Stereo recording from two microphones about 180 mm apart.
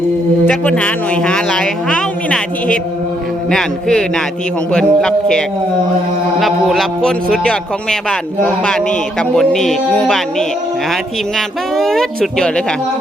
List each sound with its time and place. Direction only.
0.4 s a man's voice: 5° left (ahead or behind)
6.4 s a man's voice: centre (ahead or behind)